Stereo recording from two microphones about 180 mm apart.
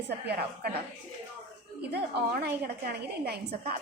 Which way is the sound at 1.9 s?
60° right (ahead or behind).